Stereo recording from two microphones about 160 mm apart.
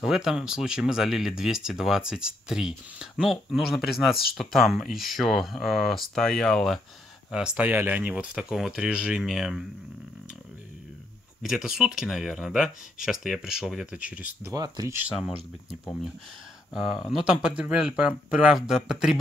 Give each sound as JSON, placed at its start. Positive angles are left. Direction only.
{"t": 0.0, "sound": "speech", "side_deg": -5}
{"t": 11.4, "sound": "speech", "side_deg": -5}
{"t": 14.5, "sound": "speech", "side_deg": -20}
{"t": 15.0, "sound": "speech", "side_deg": 0}
{"t": 16.7, "sound": "speech", "side_deg": 0}